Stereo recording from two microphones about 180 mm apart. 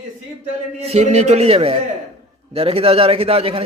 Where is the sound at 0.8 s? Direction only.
35° right (ahead or behind).